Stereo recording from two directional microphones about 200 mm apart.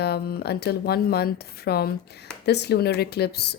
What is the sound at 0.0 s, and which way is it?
Speech, 55° left (ahead or behind).